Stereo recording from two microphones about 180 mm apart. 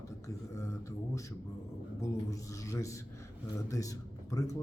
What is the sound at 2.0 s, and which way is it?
A man's voice, 20° left (ahead or behind).